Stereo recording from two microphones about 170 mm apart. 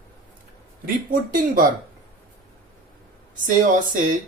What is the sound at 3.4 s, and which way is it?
Speech, 50° right (ahead or behind).